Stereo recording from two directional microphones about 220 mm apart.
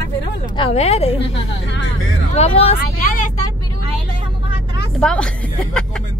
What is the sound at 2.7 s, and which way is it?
Speech, 40° left (ahead or behind).